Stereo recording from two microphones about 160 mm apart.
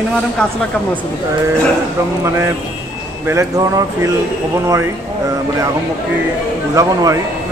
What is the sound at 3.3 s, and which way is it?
Speech, 20° right (ahead or behind).